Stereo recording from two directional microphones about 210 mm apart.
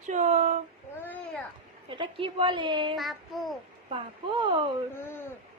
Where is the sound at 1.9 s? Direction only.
25° right (ahead or behind).